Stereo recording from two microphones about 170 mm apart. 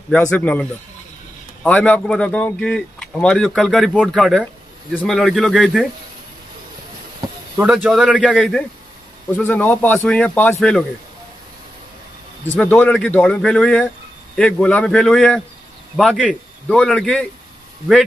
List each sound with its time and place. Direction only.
0.3 s speech: 10° left (ahead or behind)
7.2 s a sound: 20° right (ahead or behind)
7.5 s speech: 5° right (ahead or behind)
12.5 s speech: 10° left (ahead or behind)